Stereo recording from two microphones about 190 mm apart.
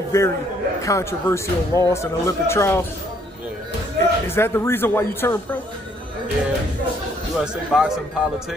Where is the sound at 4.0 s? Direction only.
15° left (ahead or behind).